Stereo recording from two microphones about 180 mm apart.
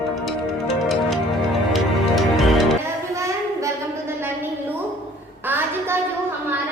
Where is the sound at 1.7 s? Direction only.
Centre (ahead or behind).